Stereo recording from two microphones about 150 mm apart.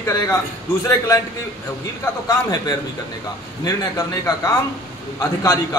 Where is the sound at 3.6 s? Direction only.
25° left (ahead or behind).